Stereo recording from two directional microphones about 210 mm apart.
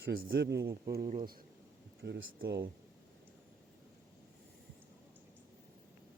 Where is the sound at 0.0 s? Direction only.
65° right (ahead or behind).